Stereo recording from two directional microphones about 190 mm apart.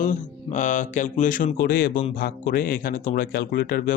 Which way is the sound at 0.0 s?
40° left (ahead or behind).